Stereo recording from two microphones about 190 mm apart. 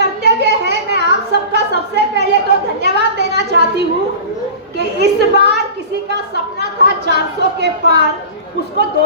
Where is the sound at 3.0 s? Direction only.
60° right (ahead or behind).